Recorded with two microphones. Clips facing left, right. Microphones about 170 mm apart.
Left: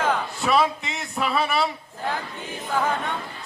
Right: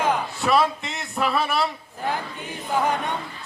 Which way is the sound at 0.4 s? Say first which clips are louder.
Right 1 dB; centre (ahead or behind).